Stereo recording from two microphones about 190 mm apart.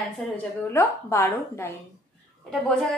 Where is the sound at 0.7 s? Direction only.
15° left (ahead or behind).